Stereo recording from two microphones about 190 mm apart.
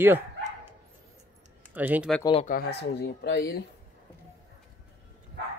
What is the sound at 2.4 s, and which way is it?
Speech, 55° left (ahead or behind).